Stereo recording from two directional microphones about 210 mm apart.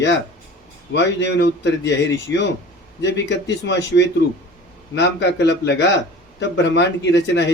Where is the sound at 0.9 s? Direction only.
55° left (ahead or behind).